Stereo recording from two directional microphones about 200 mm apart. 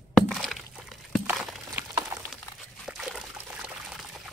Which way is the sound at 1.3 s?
10° right (ahead or behind).